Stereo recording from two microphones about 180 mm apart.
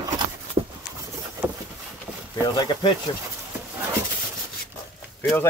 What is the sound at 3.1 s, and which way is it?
Speech, 25° left (ahead or behind).